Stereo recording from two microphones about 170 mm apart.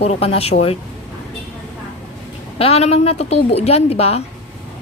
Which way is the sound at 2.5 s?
35° left (ahead or behind).